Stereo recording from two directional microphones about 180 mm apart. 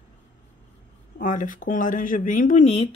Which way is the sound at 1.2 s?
45° left (ahead or behind).